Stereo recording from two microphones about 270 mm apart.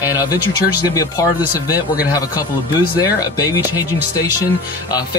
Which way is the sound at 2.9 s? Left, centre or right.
Centre.